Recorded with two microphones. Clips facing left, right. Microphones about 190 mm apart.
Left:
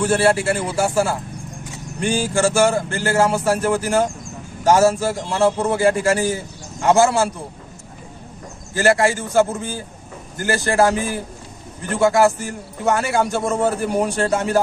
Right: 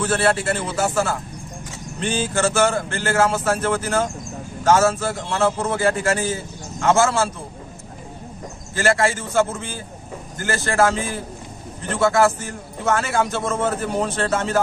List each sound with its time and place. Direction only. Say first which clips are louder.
0.0 s a man's voice: left 3 dB; 10° left (ahead or behind)
2.0 s a sound: left 3 dB; 10° left (ahead or behind)
2.4 s a man's voice: left 3 dB; 15° left (ahead or behind)
8.7 s a man's voice: left 3 dB; 15° left (ahead or behind)